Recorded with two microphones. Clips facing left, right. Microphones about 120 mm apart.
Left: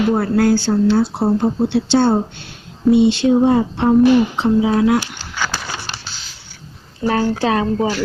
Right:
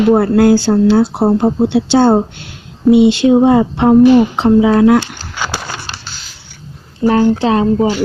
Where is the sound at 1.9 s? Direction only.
90° right; by 5.0 s 65° right (ahead or behind).